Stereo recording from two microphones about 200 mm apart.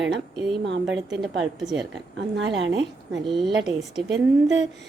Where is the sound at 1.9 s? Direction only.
65° right (ahead or behind).